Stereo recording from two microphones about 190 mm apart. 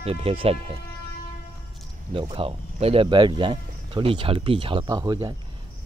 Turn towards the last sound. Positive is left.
turn(degrees=-20)  # may be behind; listen again after turning